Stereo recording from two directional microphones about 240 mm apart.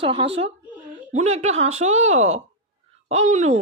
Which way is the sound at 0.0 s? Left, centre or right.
Right.